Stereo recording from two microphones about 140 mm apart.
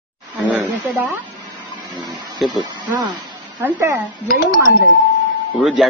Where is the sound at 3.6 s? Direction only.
20° right (ahead or behind).